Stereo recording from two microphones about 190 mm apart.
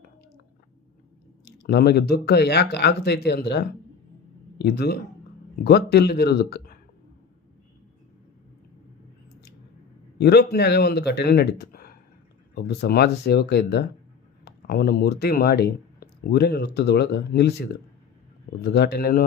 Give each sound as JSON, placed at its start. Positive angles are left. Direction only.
{"t": 1.5, "sound": "speech", "side_deg": 60}
{"t": 10.2, "sound": "speech", "side_deg": 60}